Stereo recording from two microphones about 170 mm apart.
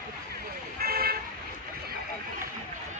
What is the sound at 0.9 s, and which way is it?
Vehicle, 65° right (ahead or behind).